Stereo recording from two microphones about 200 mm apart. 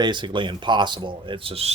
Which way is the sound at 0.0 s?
25° right (ahead or behind).